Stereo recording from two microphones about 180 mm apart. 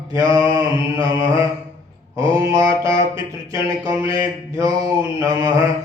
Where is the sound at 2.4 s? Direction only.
20° right (ahead or behind).